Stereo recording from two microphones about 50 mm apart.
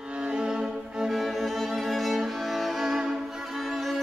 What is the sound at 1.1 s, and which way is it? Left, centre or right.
Music, centre.